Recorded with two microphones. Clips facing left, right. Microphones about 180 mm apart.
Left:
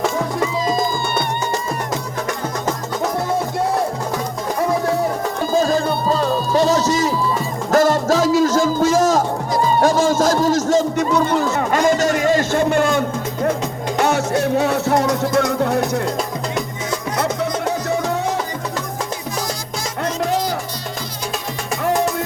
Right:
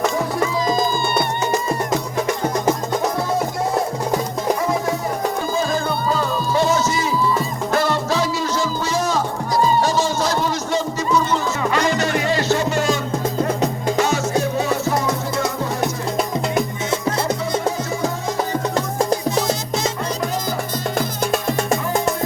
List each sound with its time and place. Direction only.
5.5 s music: 35° left (ahead or behind)
10.9 s music: 60° left (ahead or behind)